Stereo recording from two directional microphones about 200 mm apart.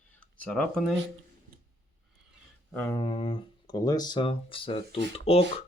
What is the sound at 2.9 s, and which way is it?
Speech, 25° left (ahead or behind).